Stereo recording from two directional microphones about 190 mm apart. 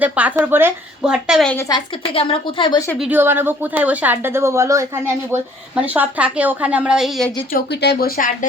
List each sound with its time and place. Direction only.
0.0 s a woman's voice: 10° right (ahead or behind)
1.6 s a woman's voice: 25° left (ahead or behind)
3.0 s a woman's voice: 10° right (ahead or behind)
7.5 s speech: 60° left (ahead or behind)